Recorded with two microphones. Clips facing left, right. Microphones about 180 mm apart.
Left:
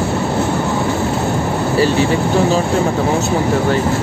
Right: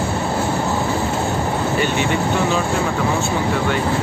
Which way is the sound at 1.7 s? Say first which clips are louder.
Left 7 dB; 35° left (ahead or behind).